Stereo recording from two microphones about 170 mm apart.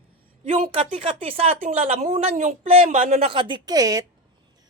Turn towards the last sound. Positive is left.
turn(degrees=-20)  # may be behind; listen again after turning